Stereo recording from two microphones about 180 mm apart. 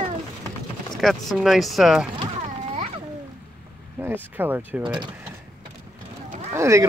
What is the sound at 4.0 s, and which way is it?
Speech, 10° right (ahead or behind).